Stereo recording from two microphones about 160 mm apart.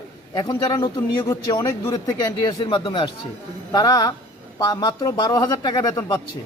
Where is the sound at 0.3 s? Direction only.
25° left (ahead or behind).